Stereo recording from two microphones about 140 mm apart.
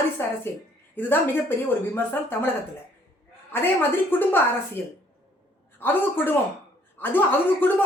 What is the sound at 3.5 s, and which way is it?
Speech, 15° left (ahead or behind).